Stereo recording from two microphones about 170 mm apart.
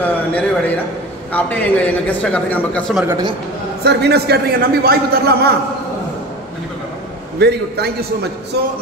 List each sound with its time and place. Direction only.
0.3 s a man's voice: 10° left (ahead or behind)
3.8 s a man's voice: 80° right
7.3 s a man's voice: 75° right (ahead or behind)